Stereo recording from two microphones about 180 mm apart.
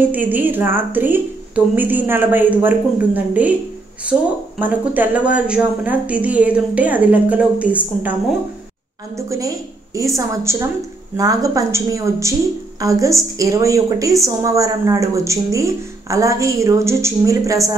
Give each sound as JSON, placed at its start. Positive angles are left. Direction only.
{"t": 0.1, "sound": "a woman's voice", "side_deg": -10}
{"t": 9.1, "sound": "a woman's voice", "side_deg": -15}